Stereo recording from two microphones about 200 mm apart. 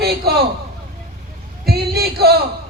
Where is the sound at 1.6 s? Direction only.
50° right (ahead or behind).